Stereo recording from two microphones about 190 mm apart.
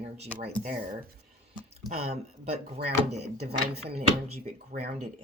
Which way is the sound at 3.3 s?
60° right (ahead or behind).